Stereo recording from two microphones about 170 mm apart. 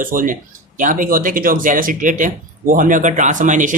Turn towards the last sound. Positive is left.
turn(degrees=-50)  # may be behind; listen again after turning